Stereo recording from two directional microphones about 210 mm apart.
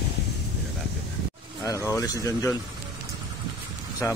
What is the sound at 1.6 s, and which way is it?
Speech, 15° left (ahead or behind).